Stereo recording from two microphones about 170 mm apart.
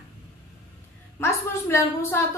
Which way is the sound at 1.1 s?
15° left (ahead or behind).